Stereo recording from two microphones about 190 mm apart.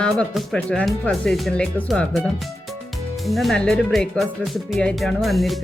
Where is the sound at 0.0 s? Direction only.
Centre (ahead or behind).